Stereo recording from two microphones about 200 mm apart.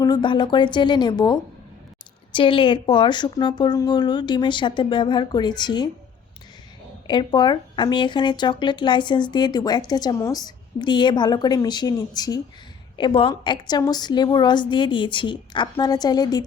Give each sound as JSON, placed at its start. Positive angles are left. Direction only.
{"t": 0.0, "sound": "speech", "side_deg": 20}
{"t": 7.1, "sound": "speech", "side_deg": 20}